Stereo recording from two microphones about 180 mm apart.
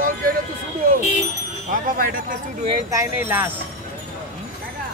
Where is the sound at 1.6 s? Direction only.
50° right (ahead or behind).